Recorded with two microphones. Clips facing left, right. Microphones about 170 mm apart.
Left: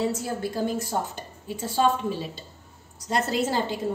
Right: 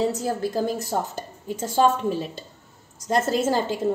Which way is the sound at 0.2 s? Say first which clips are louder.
Right 3 dB; 45° right (ahead or behind).